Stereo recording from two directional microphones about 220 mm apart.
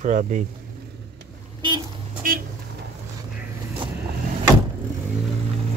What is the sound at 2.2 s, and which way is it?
Vehicle, 40° right (ahead or behind).